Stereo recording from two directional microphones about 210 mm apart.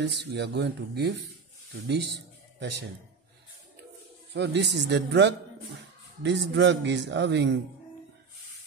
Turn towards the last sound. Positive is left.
turn(degrees=-55)  # may be behind; listen again after turning